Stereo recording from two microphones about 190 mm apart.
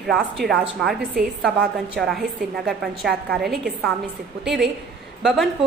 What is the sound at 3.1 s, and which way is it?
Speech, 55° right (ahead or behind).